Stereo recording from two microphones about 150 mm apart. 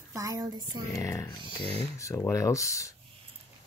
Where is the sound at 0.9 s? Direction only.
20° left (ahead or behind).